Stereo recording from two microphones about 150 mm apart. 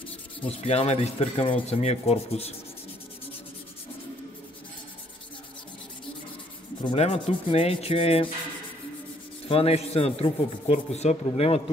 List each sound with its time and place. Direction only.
0.4 s speech: 45° left (ahead or behind)
7.0 s rub: 45° left (ahead or behind)
9.5 s speech: 40° left (ahead or behind)
11.2 s rub: 40° left (ahead or behind)